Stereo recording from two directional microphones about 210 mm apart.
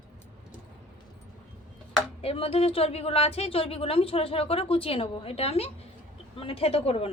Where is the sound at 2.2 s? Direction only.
25° left (ahead or behind).